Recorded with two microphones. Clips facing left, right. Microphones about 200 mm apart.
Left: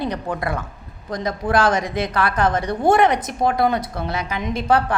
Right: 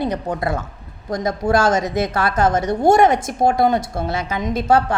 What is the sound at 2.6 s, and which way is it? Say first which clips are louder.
Speech: right 3 dB; 45° right (ahead or behind).